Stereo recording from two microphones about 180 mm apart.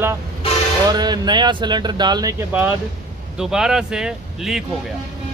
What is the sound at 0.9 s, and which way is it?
Speech, 25° right (ahead or behind).